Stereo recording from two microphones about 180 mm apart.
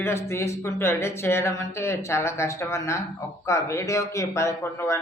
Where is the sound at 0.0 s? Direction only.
15° left (ahead or behind).